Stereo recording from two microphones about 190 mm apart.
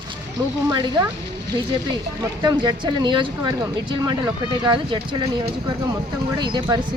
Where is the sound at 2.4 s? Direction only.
25° right (ahead or behind).